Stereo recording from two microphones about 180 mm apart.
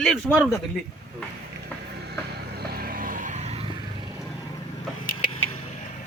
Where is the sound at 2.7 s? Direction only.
55° right (ahead or behind).